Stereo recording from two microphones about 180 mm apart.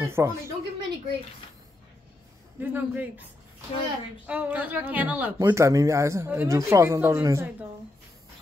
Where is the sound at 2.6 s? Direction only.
10° right (ahead or behind).